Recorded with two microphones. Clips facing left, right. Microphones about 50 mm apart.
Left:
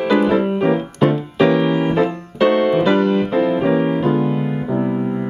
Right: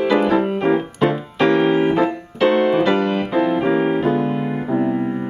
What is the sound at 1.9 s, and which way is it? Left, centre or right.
Piano, centre.